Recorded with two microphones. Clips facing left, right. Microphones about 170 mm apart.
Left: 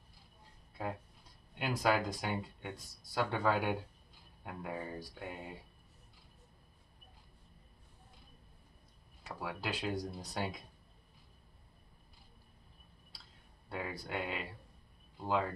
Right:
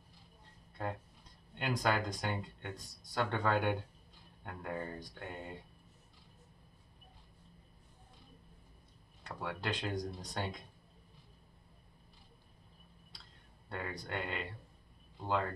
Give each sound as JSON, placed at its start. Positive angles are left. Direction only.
{"t": 0.8, "sound": "speech", "side_deg": 5}
{"t": 9.2, "sound": "speech", "side_deg": 5}
{"t": 13.7, "sound": "speech", "side_deg": 5}